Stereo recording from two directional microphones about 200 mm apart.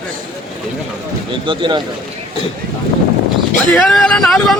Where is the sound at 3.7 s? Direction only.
5° left (ahead or behind).